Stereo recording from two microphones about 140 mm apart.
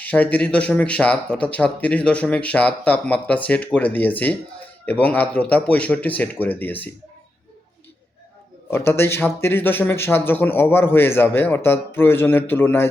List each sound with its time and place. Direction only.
0.0 s speech: 10° left (ahead or behind)
8.7 s speech: 15° left (ahead or behind)